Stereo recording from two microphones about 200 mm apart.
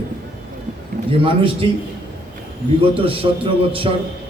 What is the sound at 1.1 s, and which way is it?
Speech, 25° right (ahead or behind).